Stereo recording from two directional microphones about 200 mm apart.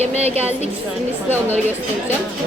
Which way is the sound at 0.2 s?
30° right (ahead or behind).